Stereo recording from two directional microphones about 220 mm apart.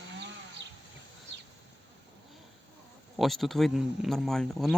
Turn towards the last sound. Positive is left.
turn(degrees=0)  # may be behind; listen again after turning